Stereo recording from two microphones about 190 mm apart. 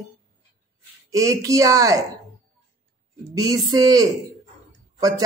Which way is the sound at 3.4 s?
20° right (ahead or behind).